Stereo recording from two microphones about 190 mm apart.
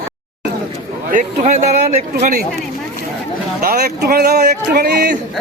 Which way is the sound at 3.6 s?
50° right (ahead or behind).